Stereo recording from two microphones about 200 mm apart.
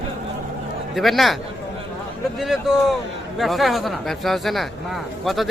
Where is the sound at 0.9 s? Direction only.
Centre (ahead or behind).